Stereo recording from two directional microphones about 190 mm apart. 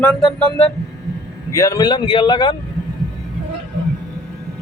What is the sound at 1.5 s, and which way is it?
Speech, 15° left (ahead or behind).